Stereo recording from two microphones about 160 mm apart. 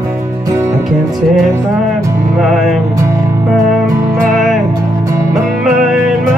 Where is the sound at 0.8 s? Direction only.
Centre (ahead or behind).